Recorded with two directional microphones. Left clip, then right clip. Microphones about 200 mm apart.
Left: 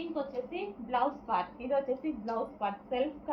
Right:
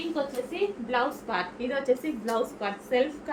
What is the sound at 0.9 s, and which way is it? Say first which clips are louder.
Speech: left 2 dB; 20° right (ahead or behind).